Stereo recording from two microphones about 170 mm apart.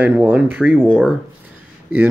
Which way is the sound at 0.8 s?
5° left (ahead or behind).